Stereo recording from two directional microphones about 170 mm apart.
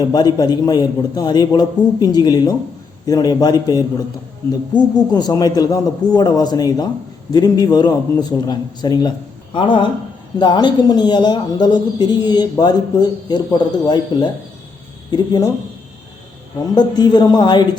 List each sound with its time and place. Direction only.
0.0 s a man's voice: 25° left (ahead or behind)
16.7 s a man's voice: 25° left (ahead or behind)